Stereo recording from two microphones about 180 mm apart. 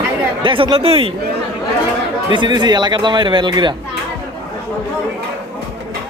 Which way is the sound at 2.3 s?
25° right (ahead or behind).